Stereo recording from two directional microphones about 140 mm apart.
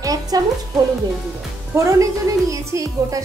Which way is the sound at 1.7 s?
25° right (ahead or behind).